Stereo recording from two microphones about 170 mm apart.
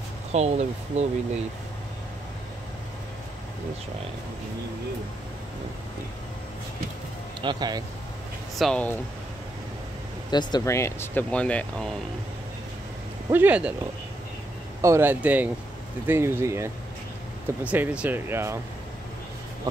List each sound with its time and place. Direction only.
0.3 s speech: 40° right (ahead or behind)
7.4 s speech: 25° right (ahead or behind)
8.5 s speech: 5° left (ahead or behind)
10.3 s speech: 20° left (ahead or behind); by 12.0 s 5° left (ahead or behind)
13.3 s speech: 10° right (ahead or behind)
14.8 s speech: 15° right (ahead or behind)